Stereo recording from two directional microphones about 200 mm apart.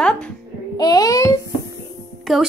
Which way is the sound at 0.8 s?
20° left (ahead or behind).